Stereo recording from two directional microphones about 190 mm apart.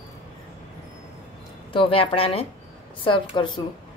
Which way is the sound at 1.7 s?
25° left (ahead or behind).